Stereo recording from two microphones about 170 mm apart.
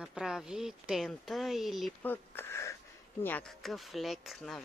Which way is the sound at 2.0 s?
10° left (ahead or behind).